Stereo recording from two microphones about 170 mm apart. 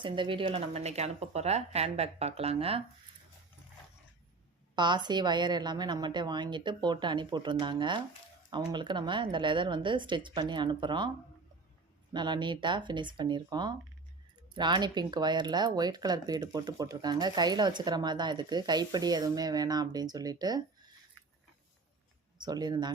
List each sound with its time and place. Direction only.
0.0 s speech: 30° right (ahead or behind)
4.7 s speech: 25° right (ahead or behind)
12.1 s speech: 25° right (ahead or behind)
22.4 s speech: 25° right (ahead or behind)